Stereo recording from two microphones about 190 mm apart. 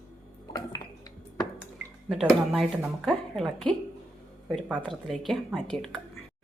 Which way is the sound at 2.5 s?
Centre (ahead or behind).